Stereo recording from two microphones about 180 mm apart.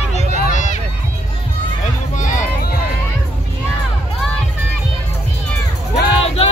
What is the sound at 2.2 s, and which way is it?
Music, 45° left (ahead or behind).